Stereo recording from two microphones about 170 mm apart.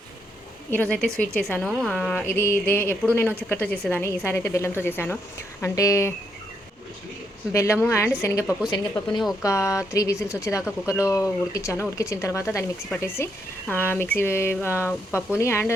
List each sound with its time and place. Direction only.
0.7 s a woman's voice: 10° left (ahead or behind)
7.5 s a woman's voice: 15° left (ahead or behind)